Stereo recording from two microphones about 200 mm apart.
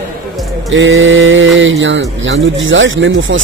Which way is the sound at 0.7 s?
70° right (ahead or behind).